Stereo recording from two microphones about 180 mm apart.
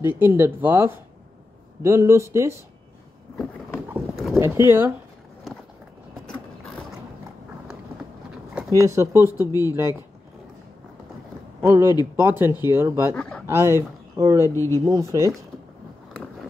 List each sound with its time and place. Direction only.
0.0 s speech: 10° right (ahead or behind)
3.9 s clip-clop: centre (ahead or behind)
4.4 s speech: 15° right (ahead or behind)
6.2 s a sound: 5° left (ahead or behind)
8.6 s speech: 15° right (ahead or behind)
9.4 s speech: 20° left (ahead or behind)
9.7 s speech: 15° right (ahead or behind)
11.6 s speech: 15° right (ahead or behind)
13.1 s speech: 5° left (ahead or behind)
13.5 s speech: 15° right (ahead or behind)
14.5 s speech: 15° left (ahead or behind)
14.9 s speech: 20° right (ahead or behind)